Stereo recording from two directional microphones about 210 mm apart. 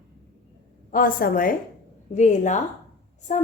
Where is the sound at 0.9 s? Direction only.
40° left (ahead or behind).